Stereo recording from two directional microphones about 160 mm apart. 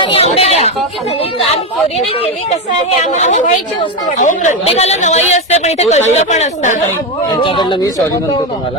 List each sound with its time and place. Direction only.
0.0 s speech: 35° left (ahead or behind)
3.0 s speech: 45° left (ahead or behind)
7.4 s speech: 30° left (ahead or behind)